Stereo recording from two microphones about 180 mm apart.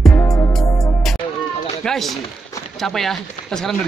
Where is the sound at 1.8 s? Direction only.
Centre (ahead or behind).